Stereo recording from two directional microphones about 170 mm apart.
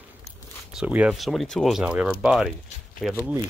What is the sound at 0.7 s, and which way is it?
Speech, 5° right (ahead or behind).